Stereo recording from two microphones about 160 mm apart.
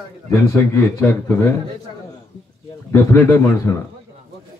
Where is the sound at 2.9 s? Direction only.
15° left (ahead or behind).